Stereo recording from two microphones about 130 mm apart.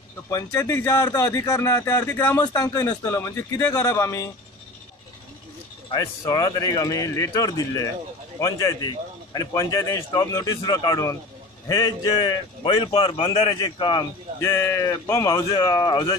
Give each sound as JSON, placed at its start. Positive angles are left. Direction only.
{"t": 0.3, "sound": "speech", "side_deg": 25}
{"t": 2.4, "sound": "speech", "side_deg": 30}
{"t": 5.9, "sound": "a man's voice", "side_deg": 30}
{"t": 14.4, "sound": "speech", "side_deg": 20}